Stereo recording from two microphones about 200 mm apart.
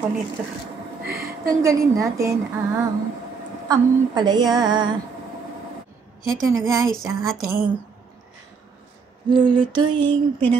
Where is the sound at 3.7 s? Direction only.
20° right (ahead or behind).